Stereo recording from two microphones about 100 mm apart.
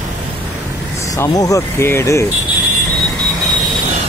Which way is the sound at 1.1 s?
35° left (ahead or behind).